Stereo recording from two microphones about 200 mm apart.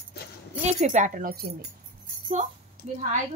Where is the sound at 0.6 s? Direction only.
35° right (ahead or behind).